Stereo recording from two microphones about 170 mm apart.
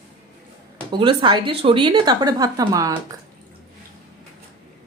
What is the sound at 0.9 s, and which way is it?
Speech, 30° right (ahead or behind).